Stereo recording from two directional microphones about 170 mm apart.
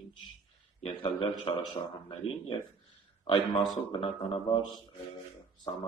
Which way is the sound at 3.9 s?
30° left (ahead or behind).